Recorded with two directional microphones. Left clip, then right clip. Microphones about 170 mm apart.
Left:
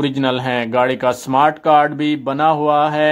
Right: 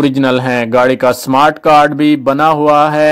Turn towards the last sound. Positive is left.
turn(degrees=-35)  # may be behind; listen again after turning